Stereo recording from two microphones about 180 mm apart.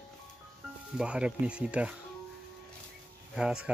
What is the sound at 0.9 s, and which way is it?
Speech, 5° right (ahead or behind).